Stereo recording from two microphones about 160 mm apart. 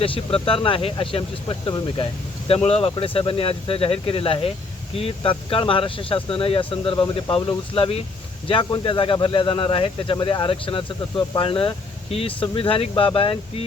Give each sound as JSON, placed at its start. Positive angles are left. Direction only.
{"t": 0.0, "sound": "speech", "side_deg": 35}